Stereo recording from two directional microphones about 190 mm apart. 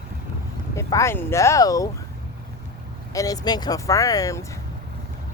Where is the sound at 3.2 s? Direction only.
20° left (ahead or behind).